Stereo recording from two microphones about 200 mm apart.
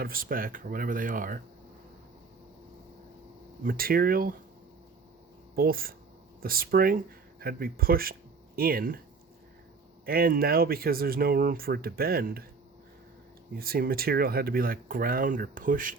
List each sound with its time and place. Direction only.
0.0 s speech: 45° right (ahead or behind)
3.6 s speech: 45° right (ahead or behind)
5.5 s speech: 45° right (ahead or behind)
10.1 s speech: 50° right (ahead or behind)
13.6 s speech: 50° right (ahead or behind)